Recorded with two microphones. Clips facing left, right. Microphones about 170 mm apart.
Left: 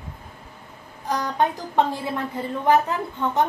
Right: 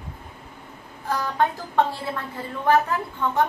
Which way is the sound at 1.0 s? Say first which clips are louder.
Left 1 dB; 20° left (ahead or behind).